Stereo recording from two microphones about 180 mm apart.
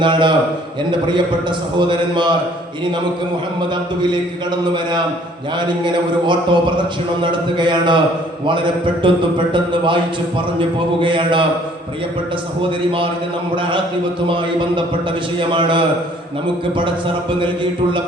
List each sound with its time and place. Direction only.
0.0 s a man's voice: 25° right (ahead or behind)
5.5 s a man's voice: 25° right (ahead or behind)
11.0 s a man's voice: 25° right (ahead or behind)
13.6 s a man's voice: 25° right (ahead or behind)
15.4 s a man's voice: 25° right (ahead or behind)
17.4 s a man's voice: 25° right (ahead or behind)